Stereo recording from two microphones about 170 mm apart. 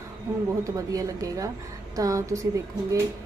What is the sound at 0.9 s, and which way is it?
A woman's voice, 20° right (ahead or behind).